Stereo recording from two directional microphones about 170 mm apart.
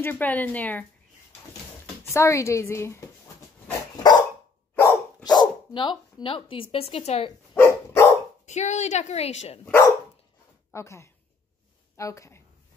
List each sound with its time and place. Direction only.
0.0 s a woman's voice: 10° left (ahead or behind)
2.0 s a woman's voice: 15° left (ahead or behind)
3.9 s dog: 25° left (ahead or behind)
4.7 s speech: 20° left (ahead or behind); by 7.3 s 35° left (ahead or behind)
7.5 s dog: 15° left (ahead or behind)
8.5 s a woman's voice: 45° left (ahead or behind)
9.7 s a woman's voice: 15° left (ahead or behind)